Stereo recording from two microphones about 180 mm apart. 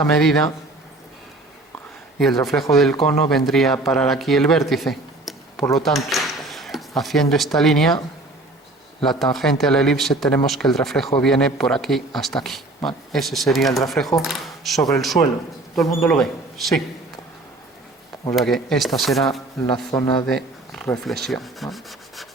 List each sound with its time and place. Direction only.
0.0 s speech: centre (ahead or behind)
2.1 s speech: centre (ahead or behind)
9.0 s speech: centre (ahead or behind)
18.3 s speech: centre (ahead or behind)
19.9 s a man's voice: 20° left (ahead or behind)
20.2 s speech: centre (ahead or behind)